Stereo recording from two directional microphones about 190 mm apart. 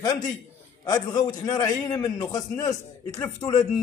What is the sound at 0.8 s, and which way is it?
A man's voice, 20° left (ahead or behind).